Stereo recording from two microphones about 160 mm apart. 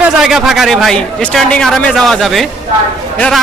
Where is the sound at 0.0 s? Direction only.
Centre (ahead or behind).